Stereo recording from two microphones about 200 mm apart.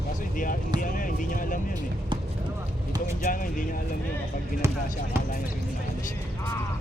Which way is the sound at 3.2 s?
45° left (ahead or behind).